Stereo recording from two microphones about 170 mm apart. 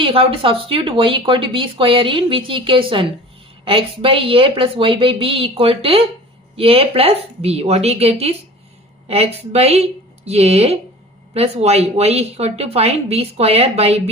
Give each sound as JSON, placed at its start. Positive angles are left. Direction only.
{"t": 0.0, "sound": "speech", "side_deg": -30}